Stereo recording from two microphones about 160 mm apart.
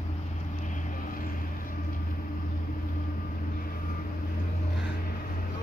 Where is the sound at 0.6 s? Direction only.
50° left (ahead or behind).